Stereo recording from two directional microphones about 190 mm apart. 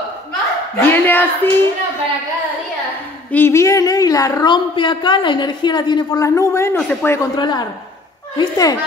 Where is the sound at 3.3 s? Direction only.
10° left (ahead or behind).